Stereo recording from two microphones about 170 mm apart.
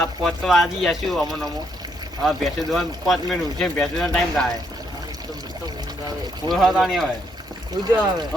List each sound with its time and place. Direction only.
0.0 s speech: centre (ahead or behind)
6.5 s speech: centre (ahead or behind)
7.8 s speech: 25° right (ahead or behind)